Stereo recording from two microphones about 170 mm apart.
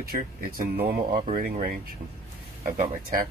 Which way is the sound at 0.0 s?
60° right (ahead or behind).